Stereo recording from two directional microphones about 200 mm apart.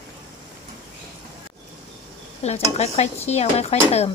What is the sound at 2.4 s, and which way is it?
Speech, 30° left (ahead or behind).